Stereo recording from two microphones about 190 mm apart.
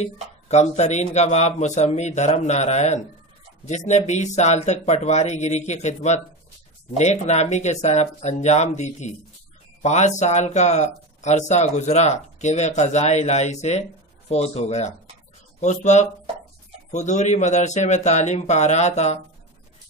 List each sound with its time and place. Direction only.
0.0 s speech: 35° left (ahead or behind)